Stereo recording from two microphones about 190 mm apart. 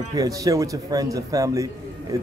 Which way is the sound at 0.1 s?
20° right (ahead or behind).